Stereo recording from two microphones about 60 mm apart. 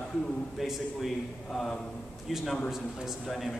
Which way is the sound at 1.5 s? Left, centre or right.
Centre.